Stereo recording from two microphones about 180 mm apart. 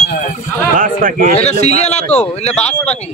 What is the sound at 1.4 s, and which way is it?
Speech, 40° left (ahead or behind).